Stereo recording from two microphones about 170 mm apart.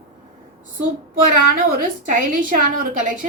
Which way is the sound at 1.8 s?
50° right (ahead or behind).